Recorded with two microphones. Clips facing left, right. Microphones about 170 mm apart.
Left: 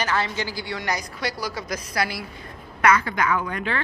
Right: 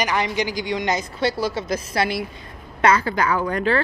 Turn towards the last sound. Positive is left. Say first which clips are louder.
# right 5 dB
turn(degrees=-40)  # may be behind; listen again after turning